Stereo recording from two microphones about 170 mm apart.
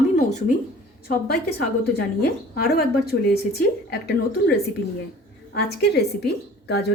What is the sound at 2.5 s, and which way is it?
A woman's voice, 65° left (ahead or behind).